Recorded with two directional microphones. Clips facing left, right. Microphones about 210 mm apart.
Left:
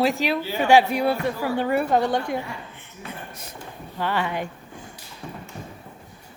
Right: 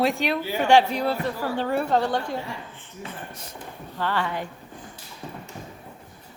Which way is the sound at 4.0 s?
15° left (ahead or behind).